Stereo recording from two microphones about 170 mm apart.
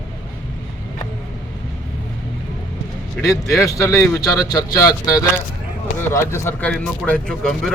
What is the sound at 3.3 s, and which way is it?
A man's voice, 20° left (ahead or behind).